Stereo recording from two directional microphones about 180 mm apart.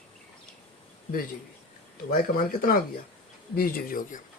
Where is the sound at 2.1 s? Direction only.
50° left (ahead or behind).